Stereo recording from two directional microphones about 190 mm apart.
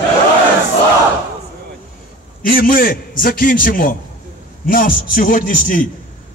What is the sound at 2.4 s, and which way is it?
A man's voice, 50° left (ahead or behind).